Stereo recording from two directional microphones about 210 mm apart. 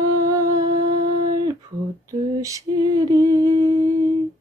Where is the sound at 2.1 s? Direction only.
15° right (ahead or behind).